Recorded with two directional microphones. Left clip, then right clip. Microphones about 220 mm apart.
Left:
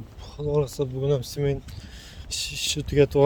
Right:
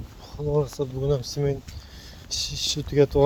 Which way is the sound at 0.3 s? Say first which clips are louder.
Even; 20° left (ahead or behind).